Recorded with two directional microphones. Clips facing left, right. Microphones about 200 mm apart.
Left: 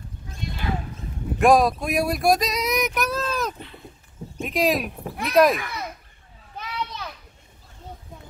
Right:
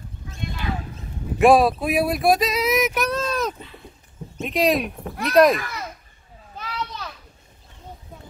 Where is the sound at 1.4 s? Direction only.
Centre (ahead or behind).